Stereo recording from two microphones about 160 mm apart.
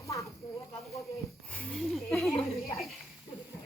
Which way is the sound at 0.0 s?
20° left (ahead or behind).